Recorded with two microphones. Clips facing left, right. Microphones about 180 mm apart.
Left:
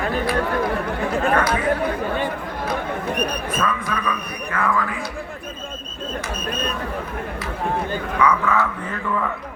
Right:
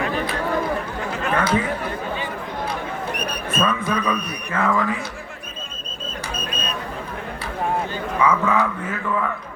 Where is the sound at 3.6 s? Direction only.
25° right (ahead or behind).